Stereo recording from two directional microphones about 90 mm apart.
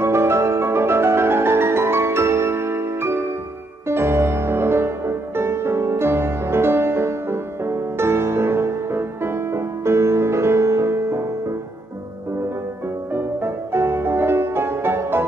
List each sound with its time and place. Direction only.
0.0 s music: 30° right (ahead or behind)
13.1 s music: 25° right (ahead or behind)